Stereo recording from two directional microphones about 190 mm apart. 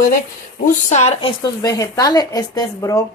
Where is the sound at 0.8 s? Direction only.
35° left (ahead or behind).